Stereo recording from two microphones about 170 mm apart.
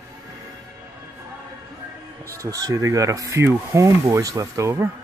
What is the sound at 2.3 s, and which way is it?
Speech, 20° right (ahead or behind).